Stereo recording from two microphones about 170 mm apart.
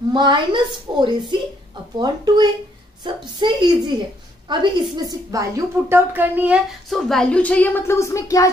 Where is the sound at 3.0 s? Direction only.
25° right (ahead or behind).